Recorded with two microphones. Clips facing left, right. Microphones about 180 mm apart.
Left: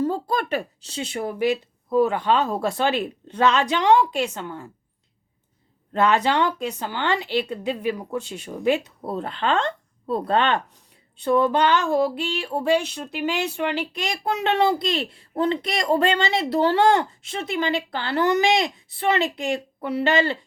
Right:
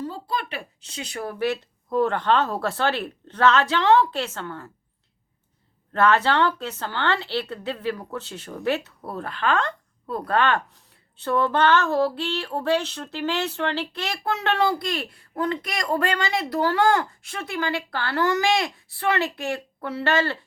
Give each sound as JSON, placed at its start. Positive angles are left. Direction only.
{"t": 0.0, "sound": "speech", "side_deg": 45}
{"t": 5.9, "sound": "a woman's voice", "side_deg": 15}